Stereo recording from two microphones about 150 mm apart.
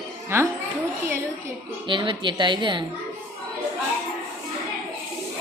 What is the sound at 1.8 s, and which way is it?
A woman's voice, 35° right (ahead or behind).